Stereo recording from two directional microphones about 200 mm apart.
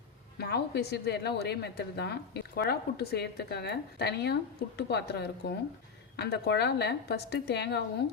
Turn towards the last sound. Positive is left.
turn(degrees=55)  # may be behind; listen again after turning